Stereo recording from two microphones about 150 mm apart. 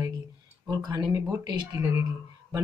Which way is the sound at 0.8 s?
25° right (ahead or behind).